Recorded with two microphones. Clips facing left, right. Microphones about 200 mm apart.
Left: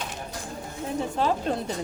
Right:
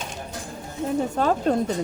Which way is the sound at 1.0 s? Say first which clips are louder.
Right 2 dB; 45° right (ahead or behind).